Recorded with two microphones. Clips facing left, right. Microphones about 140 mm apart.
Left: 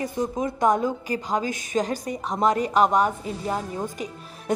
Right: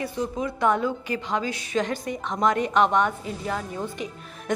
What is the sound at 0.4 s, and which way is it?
A woman's voice, 35° left (ahead or behind).